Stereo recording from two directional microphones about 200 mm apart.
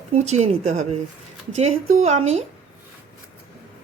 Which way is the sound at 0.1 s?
35° right (ahead or behind).